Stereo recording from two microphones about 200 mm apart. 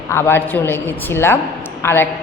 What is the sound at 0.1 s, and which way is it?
A woman's voice, 10° left (ahead or behind).